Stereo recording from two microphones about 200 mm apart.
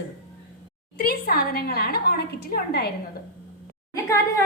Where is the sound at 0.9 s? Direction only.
50° left (ahead or behind).